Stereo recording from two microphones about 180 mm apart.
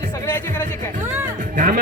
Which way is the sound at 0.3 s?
10° left (ahead or behind).